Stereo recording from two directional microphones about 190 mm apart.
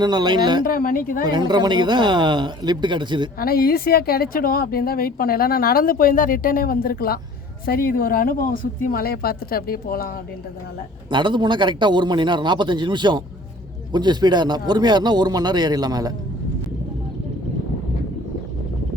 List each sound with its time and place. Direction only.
0.0 s speech: 20° right (ahead or behind)
0.6 s a woman's voice: 50° left (ahead or behind)
1.2 s speech: 20° right (ahead or behind)
3.3 s a woman's voice: 50° left (ahead or behind)
11.1 s speech: 25° right (ahead or behind)